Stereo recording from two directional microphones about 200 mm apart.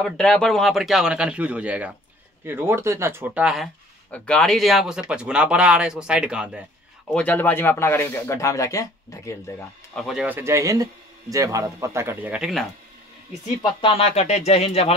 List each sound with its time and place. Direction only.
0.0 s speech: 5° left (ahead or behind)
7.1 s speech: 5° left (ahead or behind)
9.9 s speech: centre (ahead or behind)
13.6 s speech: 25° left (ahead or behind)